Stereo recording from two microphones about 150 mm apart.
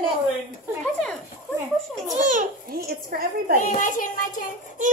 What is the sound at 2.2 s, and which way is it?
Babbling, 75° right (ahead or behind).